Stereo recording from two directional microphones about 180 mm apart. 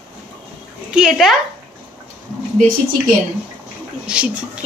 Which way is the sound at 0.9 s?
Centre (ahead or behind).